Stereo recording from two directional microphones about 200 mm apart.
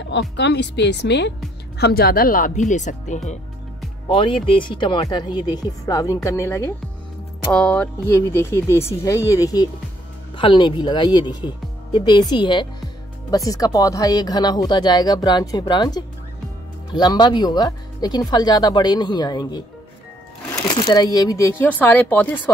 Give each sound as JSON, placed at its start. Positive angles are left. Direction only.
{"t": 0.0, "sound": "speech", "side_deg": 60}
{"t": 4.1, "sound": "speech", "side_deg": 25}